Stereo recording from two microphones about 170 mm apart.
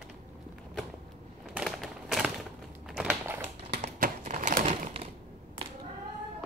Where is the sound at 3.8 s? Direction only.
45° right (ahead or behind).